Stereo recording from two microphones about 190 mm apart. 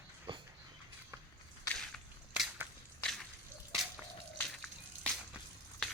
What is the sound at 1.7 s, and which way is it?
Crushing, centre (ahead or behind).